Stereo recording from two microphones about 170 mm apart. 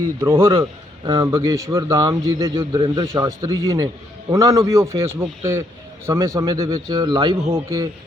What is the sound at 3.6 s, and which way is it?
A man's voice, 20° right (ahead or behind).